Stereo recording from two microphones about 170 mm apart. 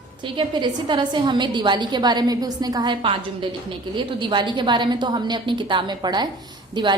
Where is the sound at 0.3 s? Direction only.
25° right (ahead or behind).